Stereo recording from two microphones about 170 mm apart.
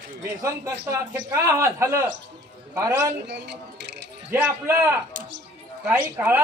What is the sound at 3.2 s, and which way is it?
Speech, 85° right.